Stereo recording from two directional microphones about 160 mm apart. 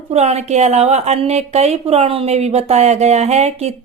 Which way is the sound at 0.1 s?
40° right (ahead or behind).